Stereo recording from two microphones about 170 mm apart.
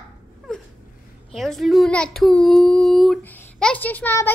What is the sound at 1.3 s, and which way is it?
Speech, centre (ahead or behind).